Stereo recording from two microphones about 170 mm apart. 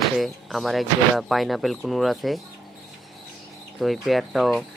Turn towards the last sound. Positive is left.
turn(degrees=0)  # may be behind; listen again after turning